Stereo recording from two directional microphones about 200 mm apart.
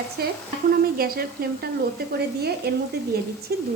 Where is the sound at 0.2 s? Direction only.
50° right (ahead or behind).